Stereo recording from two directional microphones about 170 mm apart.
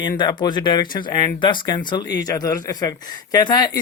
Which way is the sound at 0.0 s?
25° left (ahead or behind).